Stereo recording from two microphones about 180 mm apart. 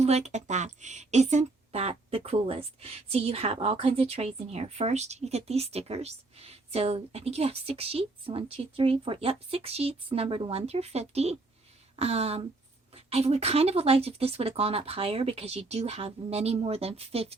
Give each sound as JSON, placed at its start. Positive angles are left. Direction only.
{"t": 0.0, "sound": "speech", "side_deg": -35}